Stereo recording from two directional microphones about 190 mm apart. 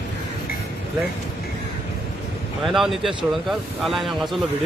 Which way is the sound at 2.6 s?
Centre (ahead or behind).